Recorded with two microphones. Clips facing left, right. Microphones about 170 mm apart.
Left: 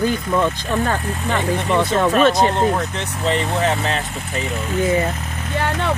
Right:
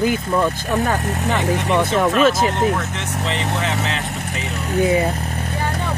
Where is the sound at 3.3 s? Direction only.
40° left (ahead or behind).